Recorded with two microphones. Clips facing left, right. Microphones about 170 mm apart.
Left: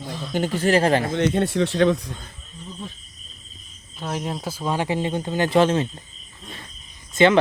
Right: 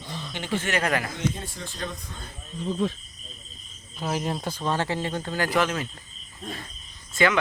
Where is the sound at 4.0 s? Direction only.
Centre (ahead or behind); by 6.0 s 30° left (ahead or behind).